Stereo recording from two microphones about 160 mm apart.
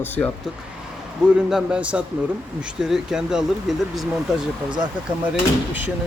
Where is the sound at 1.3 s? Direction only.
5° right (ahead or behind).